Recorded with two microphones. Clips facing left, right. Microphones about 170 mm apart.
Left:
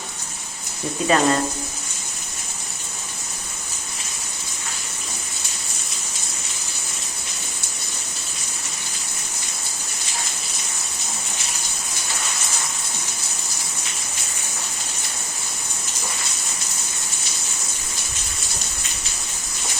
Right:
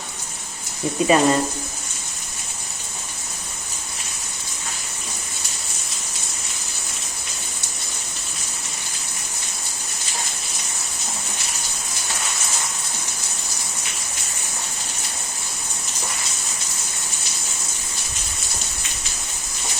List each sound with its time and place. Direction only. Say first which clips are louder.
1.0 s speech: right 2 dB; 15° right (ahead or behind)